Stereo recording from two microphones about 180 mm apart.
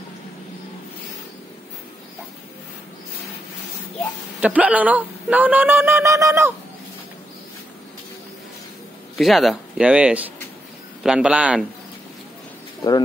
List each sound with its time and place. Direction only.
4.4 s a man's voice: 10° right (ahead or behind)
9.2 s speech: centre (ahead or behind)